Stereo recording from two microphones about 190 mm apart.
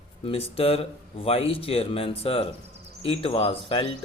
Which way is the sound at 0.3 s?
30° left (ahead or behind).